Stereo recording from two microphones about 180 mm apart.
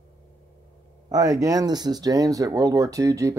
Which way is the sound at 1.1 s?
20° right (ahead or behind).